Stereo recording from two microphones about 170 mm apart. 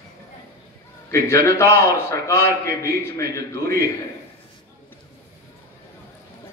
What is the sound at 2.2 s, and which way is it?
A man's voice, 15° left (ahead or behind).